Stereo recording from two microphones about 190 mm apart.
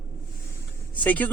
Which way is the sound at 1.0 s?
10° left (ahead or behind).